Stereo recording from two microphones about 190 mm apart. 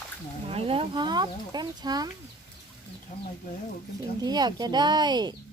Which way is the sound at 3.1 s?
40° left (ahead or behind).